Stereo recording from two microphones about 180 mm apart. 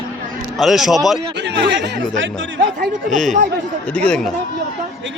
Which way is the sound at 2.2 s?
90° right.